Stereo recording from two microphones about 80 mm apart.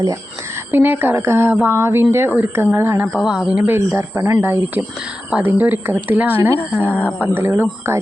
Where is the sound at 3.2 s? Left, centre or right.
Centre.